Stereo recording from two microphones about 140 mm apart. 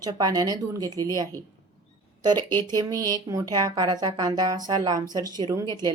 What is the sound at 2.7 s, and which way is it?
Speech, 25° right (ahead or behind).